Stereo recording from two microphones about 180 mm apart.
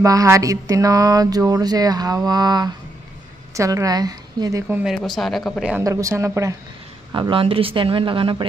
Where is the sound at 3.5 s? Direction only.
15° right (ahead or behind).